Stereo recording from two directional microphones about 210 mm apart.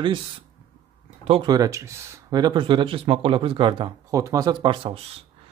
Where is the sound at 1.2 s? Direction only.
25° right (ahead or behind).